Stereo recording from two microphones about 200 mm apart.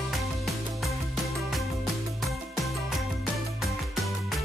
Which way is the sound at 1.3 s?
Centre (ahead or behind).